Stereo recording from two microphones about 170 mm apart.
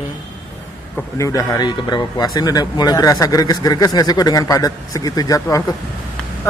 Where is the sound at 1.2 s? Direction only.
20° left (ahead or behind).